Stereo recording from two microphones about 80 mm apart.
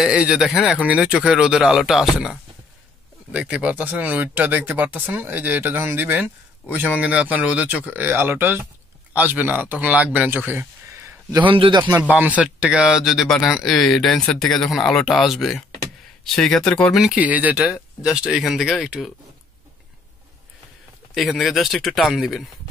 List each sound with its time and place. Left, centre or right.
0.1 s speech: centre
11.4 s a man's voice: right
12.1 s speech: centre
17.1 s speech: centre
21.1 s speech: centre